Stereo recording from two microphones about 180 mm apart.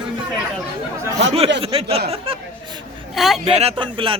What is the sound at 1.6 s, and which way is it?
Speech, 30° right (ahead or behind).